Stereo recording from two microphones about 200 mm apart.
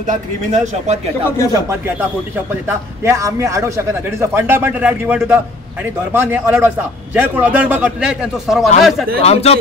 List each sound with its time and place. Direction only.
0.0 s speech: 35° right (ahead or behind)
1.5 s speech: 15° right (ahead or behind)
9.2 s speech: 30° left (ahead or behind)